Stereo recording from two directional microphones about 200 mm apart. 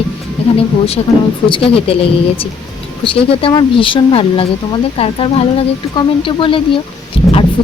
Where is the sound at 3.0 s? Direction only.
25° left (ahead or behind).